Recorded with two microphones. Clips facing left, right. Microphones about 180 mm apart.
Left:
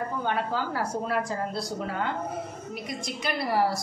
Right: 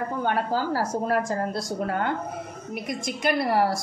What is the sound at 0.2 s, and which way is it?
A woman's voice, 45° right (ahead or behind).